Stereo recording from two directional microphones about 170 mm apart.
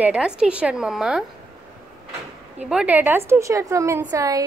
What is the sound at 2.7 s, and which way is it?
A woman's voice, 10° right (ahead or behind).